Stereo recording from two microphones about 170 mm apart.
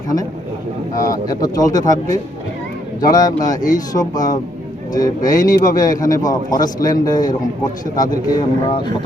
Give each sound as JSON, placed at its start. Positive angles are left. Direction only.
{"t": 0.9, "sound": "speech", "side_deg": 20}
{"t": 3.0, "sound": "speech", "side_deg": 20}